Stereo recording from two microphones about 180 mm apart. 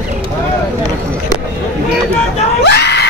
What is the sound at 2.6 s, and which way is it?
Screaming, 70° left (ahead or behind).